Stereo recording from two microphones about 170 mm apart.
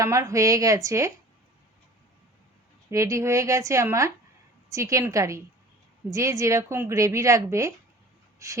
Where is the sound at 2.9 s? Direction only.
15° right (ahead or behind).